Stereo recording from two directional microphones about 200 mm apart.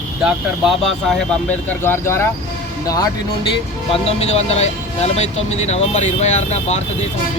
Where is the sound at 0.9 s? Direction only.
Centre (ahead or behind).